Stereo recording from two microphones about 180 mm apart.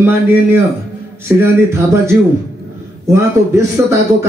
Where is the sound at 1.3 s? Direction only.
10° right (ahead or behind).